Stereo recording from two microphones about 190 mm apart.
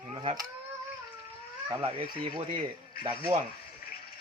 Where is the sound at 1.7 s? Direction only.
25° right (ahead or behind).